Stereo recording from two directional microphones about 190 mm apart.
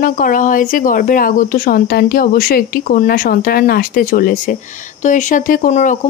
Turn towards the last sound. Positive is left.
turn(degrees=45)  # may be behind; listen again after turning